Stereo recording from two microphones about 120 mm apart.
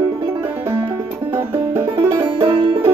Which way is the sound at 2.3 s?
40° right (ahead or behind).